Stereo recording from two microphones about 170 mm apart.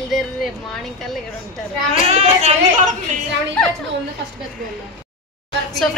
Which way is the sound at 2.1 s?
40° right (ahead or behind).